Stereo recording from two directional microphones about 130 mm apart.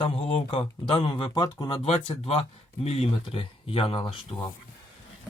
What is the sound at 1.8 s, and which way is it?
Speech, 50° left (ahead or behind).